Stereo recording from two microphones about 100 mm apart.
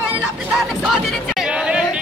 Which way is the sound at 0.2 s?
5° right (ahead or behind).